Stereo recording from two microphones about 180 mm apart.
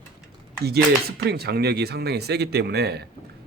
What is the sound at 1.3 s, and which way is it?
Speech, 65° right (ahead or behind).